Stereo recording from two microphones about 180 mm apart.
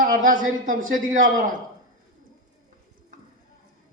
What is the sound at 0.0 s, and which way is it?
A woman's voice, 50° right (ahead or behind).